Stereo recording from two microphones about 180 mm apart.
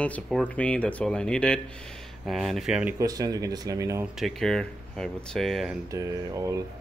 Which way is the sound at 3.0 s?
20° right (ahead or behind).